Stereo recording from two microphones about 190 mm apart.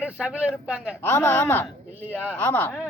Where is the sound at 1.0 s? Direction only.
10° left (ahead or behind).